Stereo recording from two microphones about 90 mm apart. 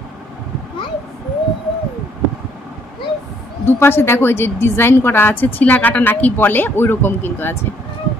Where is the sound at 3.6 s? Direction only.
25° left (ahead or behind).